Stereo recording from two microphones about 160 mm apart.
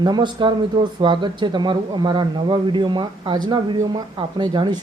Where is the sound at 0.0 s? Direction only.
25° right (ahead or behind).